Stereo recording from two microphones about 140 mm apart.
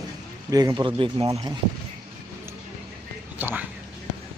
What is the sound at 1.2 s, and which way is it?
Speech, 25° right (ahead or behind).